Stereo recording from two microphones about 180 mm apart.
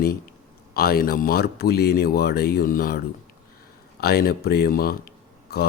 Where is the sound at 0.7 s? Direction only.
55° left (ahead or behind).